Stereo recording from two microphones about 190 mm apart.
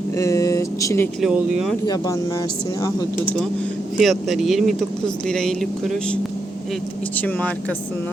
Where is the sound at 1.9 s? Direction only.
20° left (ahead or behind).